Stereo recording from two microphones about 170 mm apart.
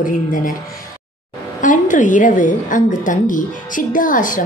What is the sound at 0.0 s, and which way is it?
Speech, 55° left (ahead or behind).